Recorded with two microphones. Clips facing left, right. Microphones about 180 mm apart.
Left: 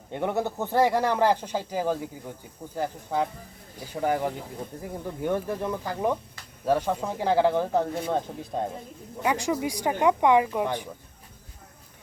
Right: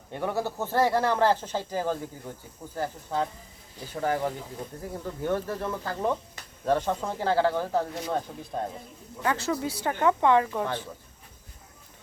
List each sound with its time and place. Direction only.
0.1 s speech: 20° left (ahead or behind)